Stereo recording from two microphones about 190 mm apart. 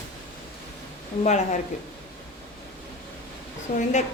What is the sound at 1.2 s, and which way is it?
Speech, 35° left (ahead or behind).